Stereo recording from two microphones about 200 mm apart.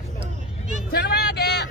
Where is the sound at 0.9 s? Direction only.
55° left (ahead or behind).